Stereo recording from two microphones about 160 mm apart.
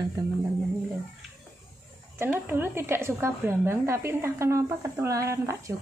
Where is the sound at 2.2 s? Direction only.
15° right (ahead or behind).